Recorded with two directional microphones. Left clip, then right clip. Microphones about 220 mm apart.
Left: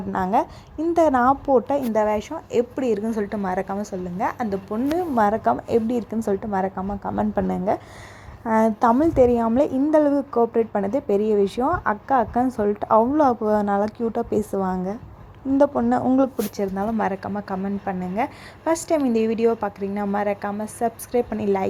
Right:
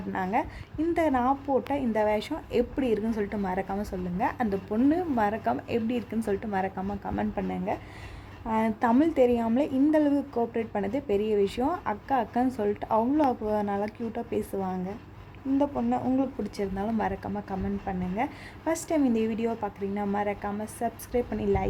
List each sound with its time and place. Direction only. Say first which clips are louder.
0.1 s speech: left 7 dB; 20° left (ahead or behind)
1.9 s a woman's voice: left 5 dB; 5° left (ahead or behind)
7.3 s a woman's voice: left 8 dB; 20° left (ahead or behind)
16.7 s a woman's voice: left 6 dB; 15° left (ahead or behind)